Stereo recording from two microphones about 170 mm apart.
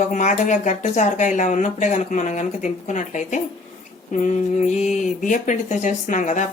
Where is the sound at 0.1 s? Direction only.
45° left (ahead or behind).